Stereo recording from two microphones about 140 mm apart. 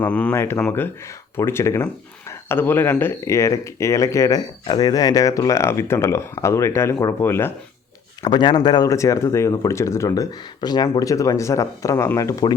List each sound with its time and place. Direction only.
0.0 s speech: 10° left (ahead or behind)
8.2 s speech: 35° left (ahead or behind)